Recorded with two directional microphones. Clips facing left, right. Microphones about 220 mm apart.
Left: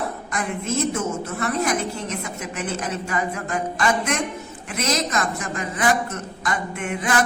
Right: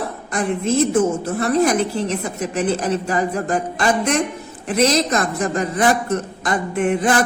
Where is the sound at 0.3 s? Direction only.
30° right (ahead or behind).